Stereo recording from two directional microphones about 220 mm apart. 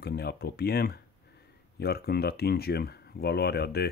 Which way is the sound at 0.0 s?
45° left (ahead or behind).